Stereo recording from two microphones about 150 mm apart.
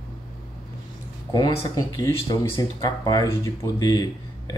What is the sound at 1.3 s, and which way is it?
Speech, 25° left (ahead or behind).